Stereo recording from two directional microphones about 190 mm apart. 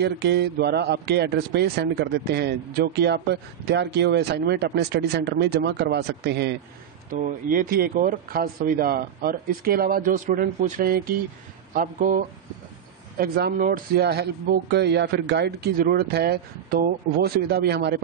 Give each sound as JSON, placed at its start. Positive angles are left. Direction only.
{"t": 0.0, "sound": "speech", "side_deg": -60}
{"t": 7.1, "sound": "speech", "side_deg": -45}
{"t": 13.2, "sound": "speech", "side_deg": -50}